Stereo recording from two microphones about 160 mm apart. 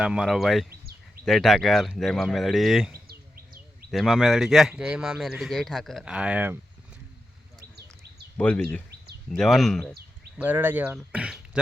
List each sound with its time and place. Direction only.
0.0 s speech: 5° right (ahead or behind)
0.7 s a sound: 70° right (ahead or behind)
1.2 s speech: centre (ahead or behind)
2.9 s bird: 70° right (ahead or behind)
3.9 s speech: centre (ahead or behind)
8.4 s speech: 10° left (ahead or behind)
10.3 s speech: 10° right (ahead or behind)